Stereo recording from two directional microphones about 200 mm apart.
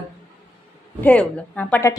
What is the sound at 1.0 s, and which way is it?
Speech, 5° left (ahead or behind).